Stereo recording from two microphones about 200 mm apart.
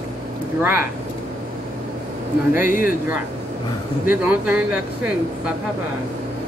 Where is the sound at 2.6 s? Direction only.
45° left (ahead or behind).